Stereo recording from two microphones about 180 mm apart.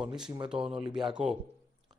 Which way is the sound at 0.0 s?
5° right (ahead or behind).